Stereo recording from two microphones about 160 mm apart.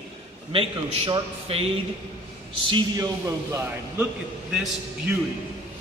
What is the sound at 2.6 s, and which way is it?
A man's voice, 20° right (ahead or behind).